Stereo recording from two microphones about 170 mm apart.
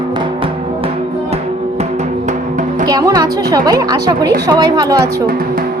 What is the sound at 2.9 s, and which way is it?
A woman's voice, 20° right (ahead or behind).